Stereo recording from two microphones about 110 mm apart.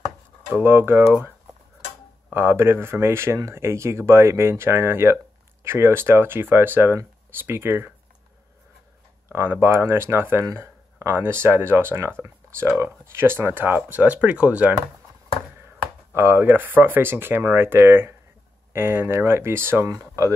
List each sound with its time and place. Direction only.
0.6 s speech: 20° right (ahead or behind)
2.3 s speech: 20° right (ahead or behind)
9.3 s speech: 20° right (ahead or behind)
16.1 s speech: 20° right (ahead or behind)